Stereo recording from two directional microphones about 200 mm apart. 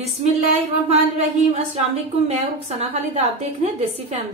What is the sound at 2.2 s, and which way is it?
Speech, 30° right (ahead or behind).